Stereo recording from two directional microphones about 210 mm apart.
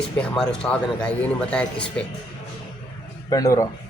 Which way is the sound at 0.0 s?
5° left (ahead or behind).